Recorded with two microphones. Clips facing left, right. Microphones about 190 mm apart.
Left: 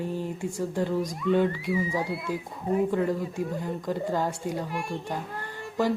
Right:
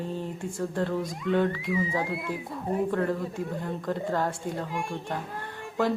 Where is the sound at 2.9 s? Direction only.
10° left (ahead or behind).